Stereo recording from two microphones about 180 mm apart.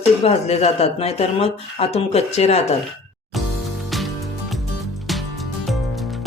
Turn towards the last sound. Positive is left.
turn(degrees=0)  # may be behind; listen again after turning